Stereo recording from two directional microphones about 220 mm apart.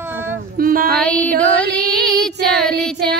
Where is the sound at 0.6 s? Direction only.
40° right (ahead or behind).